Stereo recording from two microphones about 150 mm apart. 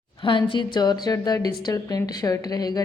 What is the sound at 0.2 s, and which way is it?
A woman's voice, 35° left (ahead or behind).